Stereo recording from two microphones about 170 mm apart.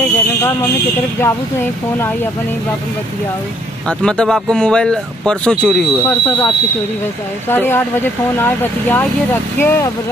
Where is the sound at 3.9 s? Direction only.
5° left (ahead or behind).